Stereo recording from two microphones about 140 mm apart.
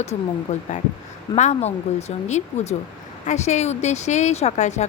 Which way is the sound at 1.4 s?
55° left (ahead or behind).